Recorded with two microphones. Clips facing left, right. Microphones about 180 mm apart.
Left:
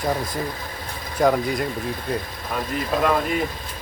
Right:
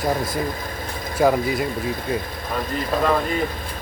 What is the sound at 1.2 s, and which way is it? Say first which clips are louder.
Speech: right 1 dB; 5° right (ahead or behind).